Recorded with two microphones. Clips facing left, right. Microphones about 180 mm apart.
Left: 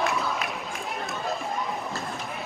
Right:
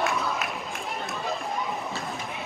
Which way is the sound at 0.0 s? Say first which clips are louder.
Even; centre (ahead or behind).